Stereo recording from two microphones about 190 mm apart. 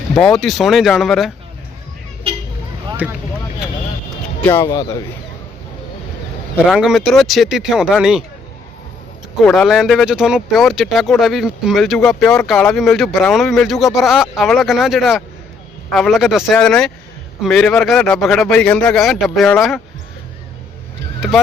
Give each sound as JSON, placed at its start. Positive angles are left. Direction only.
{"t": 0.1, "sound": "speech", "side_deg": 5}
{"t": 3.0, "sound": "speech", "side_deg": -5}
{"t": 4.4, "sound": "speech", "side_deg": 15}
{"t": 6.7, "sound": "speech", "side_deg": 0}
{"t": 9.4, "sound": "speech", "side_deg": 5}